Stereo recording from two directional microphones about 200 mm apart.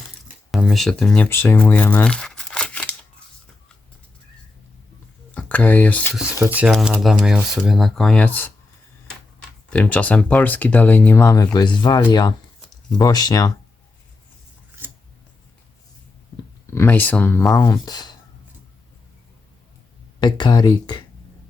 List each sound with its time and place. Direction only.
0.5 s speech: centre (ahead or behind)
5.3 s speech: 5° left (ahead or behind)
6.4 s speech: 5° right (ahead or behind); by 8.5 s 10° left (ahead or behind)
9.6 s speech: 5° left (ahead or behind)
16.6 s speech: 10° left (ahead or behind)
20.1 s speech: 20° left (ahead or behind)